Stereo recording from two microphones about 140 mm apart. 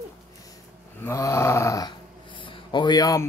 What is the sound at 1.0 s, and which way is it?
Speech, 20° left (ahead or behind).